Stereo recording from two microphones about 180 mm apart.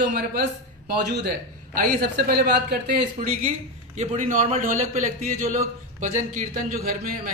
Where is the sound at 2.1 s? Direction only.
65° right (ahead or behind).